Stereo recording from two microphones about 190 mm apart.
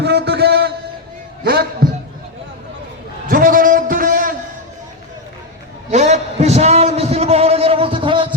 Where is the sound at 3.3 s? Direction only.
50° right (ahead or behind).